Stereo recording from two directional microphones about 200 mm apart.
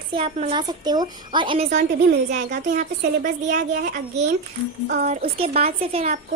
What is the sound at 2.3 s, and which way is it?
Speech, 35° right (ahead or behind).